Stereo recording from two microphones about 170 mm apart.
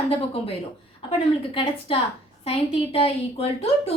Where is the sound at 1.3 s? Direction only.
35° left (ahead or behind).